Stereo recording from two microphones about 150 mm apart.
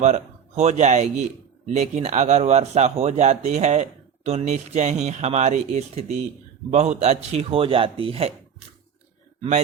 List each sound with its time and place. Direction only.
0.0 s speech: 45° right (ahead or behind)